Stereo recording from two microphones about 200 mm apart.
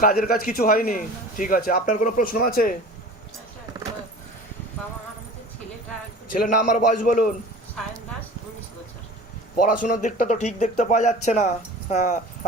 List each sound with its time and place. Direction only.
0.0 s a man's voice: 45° left (ahead or behind)
6.4 s speech: 40° left (ahead or behind)
9.6 s speech: 40° left (ahead or behind)